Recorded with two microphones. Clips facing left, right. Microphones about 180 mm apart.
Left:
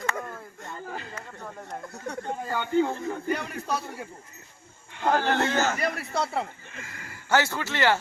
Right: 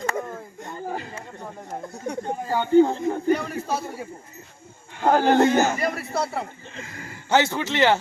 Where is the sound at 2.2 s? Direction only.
35° right (ahead or behind).